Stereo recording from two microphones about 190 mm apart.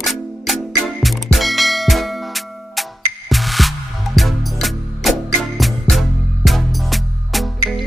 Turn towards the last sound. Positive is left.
turn(degrees=0)  # may be behind; listen again after turning